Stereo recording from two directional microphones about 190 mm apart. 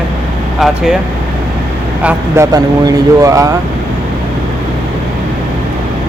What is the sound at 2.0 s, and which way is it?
Speech, 15° right (ahead or behind).